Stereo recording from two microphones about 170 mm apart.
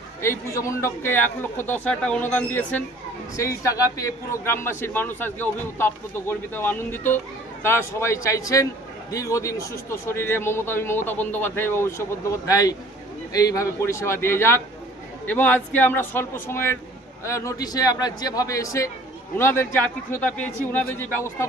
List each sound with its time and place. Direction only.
0.2 s a man's voice: 15° left (ahead or behind)
3.3 s a man's voice: 20° left (ahead or behind)